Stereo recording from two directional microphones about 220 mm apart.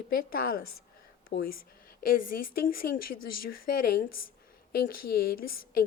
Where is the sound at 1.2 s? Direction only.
45° left (ahead or behind).